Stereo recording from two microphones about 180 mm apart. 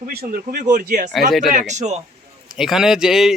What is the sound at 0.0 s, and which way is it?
Speech, 55° right (ahead or behind).